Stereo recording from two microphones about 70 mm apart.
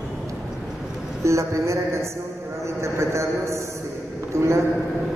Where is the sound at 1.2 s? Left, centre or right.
Right.